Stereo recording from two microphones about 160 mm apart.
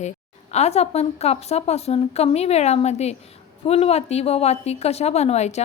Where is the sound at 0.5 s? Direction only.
40° left (ahead or behind).